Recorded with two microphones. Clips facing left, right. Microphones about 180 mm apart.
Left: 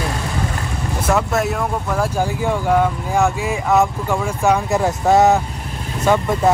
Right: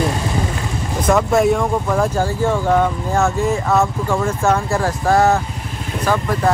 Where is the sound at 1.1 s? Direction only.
5° left (ahead or behind).